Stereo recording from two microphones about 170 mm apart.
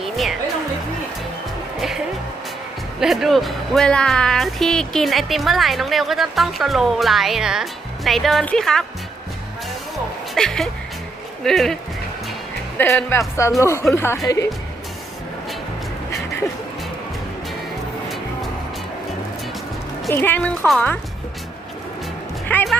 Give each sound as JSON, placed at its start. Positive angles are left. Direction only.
{"t": 0.0, "sound": "music", "side_deg": 0}
{"t": 3.0, "sound": "speech", "side_deg": 0}
{"t": 10.3, "sound": "speech", "side_deg": 5}
{"t": 12.7, "sound": "speech", "side_deg": 15}
{"t": 20.1, "sound": "speech", "side_deg": 10}
{"t": 22.4, "sound": "music", "side_deg": 5}